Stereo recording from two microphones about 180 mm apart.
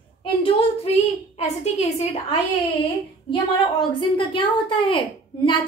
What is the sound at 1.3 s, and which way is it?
A woman's voice, 35° left (ahead or behind).